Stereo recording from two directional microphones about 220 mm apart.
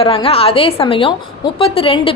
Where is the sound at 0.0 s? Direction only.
25° left (ahead or behind).